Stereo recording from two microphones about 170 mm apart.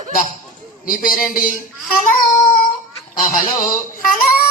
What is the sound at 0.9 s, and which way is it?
Speech, 55° left (ahead or behind).